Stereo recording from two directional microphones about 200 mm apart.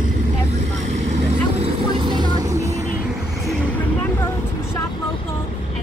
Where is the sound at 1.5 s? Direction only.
25° right (ahead or behind).